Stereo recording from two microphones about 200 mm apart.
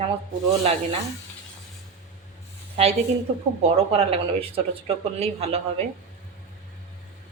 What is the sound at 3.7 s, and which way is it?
Speech, 30° right (ahead or behind).